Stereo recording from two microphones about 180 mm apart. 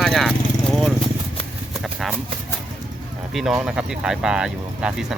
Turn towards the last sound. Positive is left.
turn(degrees=-5)  # may be behind; listen again after turning